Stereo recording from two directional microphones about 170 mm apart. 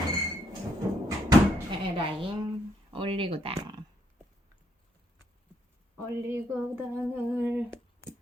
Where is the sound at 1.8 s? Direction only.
30° right (ahead or behind).